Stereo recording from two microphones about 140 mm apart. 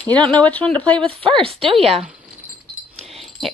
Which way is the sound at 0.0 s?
10° left (ahead or behind).